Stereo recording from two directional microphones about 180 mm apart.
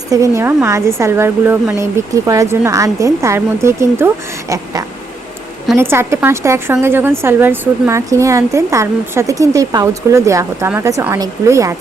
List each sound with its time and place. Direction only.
0.1 s a woman's voice: 15° right (ahead or behind)